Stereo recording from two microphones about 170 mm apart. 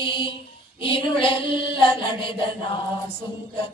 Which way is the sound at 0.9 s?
30° left (ahead or behind).